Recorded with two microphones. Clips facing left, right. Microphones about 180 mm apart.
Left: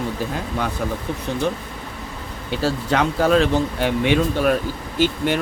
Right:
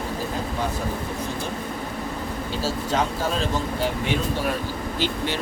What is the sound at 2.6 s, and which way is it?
Speech, 65° left (ahead or behind).